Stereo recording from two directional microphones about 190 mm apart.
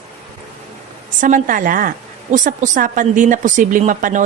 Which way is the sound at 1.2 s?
45° right (ahead or behind).